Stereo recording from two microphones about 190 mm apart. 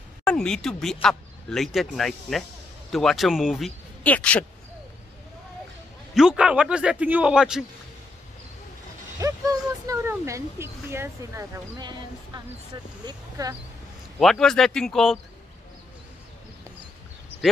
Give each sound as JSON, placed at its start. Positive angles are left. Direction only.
{"t": 0.2, "sound": "a man's voice", "side_deg": 5}
{"t": 6.1, "sound": "a man's voice", "side_deg": -5}
{"t": 9.2, "sound": "speech", "side_deg": -20}
{"t": 13.0, "sound": "speech", "side_deg": -20}
{"t": 14.2, "sound": "a man's voice", "side_deg": 0}